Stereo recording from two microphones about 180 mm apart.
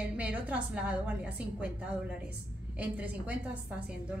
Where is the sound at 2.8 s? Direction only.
10° right (ahead or behind).